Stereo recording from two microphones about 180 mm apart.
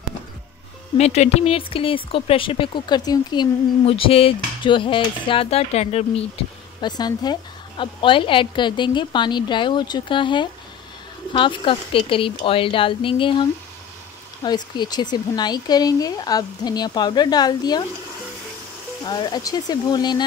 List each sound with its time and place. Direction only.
0.9 s speech: 35° left (ahead or behind)
6.8 s a woman's voice: 20° left (ahead or behind)
19.0 s a woman's voice: 25° left (ahead or behind)